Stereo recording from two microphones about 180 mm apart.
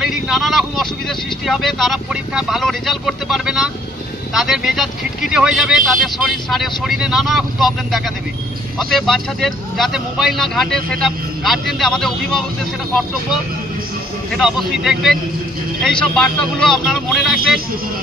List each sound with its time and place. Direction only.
0.0 s speech: centre (ahead or behind)
14.3 s speech: centre (ahead or behind)